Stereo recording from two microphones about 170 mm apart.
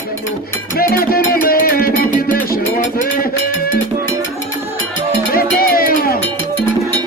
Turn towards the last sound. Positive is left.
turn(degrees=60)  # may be behind; listen again after turning